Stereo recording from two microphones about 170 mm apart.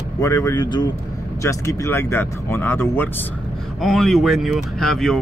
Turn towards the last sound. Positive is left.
turn(degrees=0)  # may be behind; listen again after turning